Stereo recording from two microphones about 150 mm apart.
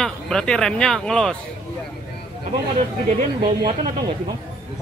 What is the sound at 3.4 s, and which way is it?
Speech, 35° right (ahead or behind).